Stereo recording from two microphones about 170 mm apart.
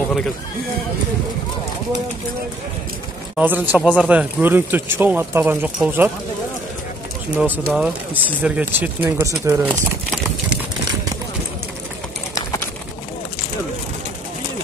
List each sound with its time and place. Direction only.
3.3 s speech: 10° right (ahead or behind)
7.3 s speech: 10° right (ahead or behind)